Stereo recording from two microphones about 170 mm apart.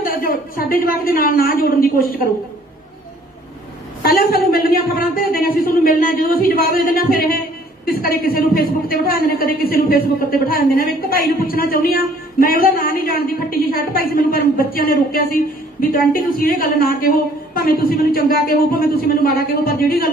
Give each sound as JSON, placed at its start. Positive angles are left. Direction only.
{"t": 0.0, "sound": "a woman's voice", "side_deg": 55}
{"t": 4.0, "sound": "a woman's voice", "side_deg": 60}